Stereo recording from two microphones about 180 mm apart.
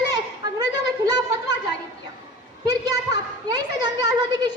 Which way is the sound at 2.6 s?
25° right (ahead or behind).